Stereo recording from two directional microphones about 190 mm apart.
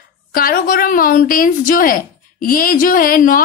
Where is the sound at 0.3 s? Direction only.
50° left (ahead or behind).